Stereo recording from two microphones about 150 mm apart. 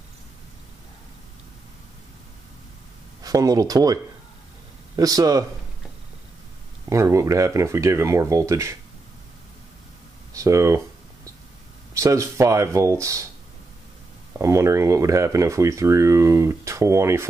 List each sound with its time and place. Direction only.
3.2 s speech: 25° right (ahead or behind)
6.9 s speech: 20° right (ahead or behind)
10.3 s speech: 20° right (ahead or behind)
11.9 s speech: 20° right (ahead or behind)
14.4 s speech: 20° right (ahead or behind)